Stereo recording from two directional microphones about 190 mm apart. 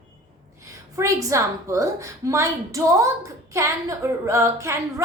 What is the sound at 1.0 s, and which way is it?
A woman's voice, 15° right (ahead or behind).